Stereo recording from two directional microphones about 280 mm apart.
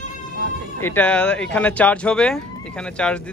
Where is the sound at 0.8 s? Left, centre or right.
Centre.